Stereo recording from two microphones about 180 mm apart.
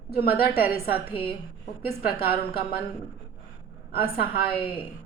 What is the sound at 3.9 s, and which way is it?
Speech, 60° left (ahead or behind).